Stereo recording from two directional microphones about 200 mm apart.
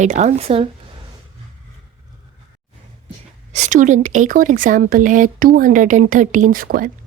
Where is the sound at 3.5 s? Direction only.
35° right (ahead or behind).